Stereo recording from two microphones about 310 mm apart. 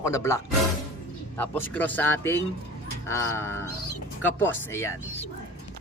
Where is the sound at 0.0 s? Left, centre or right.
Centre.